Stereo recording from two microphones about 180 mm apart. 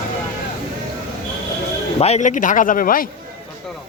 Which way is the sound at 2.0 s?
40° left (ahead or behind).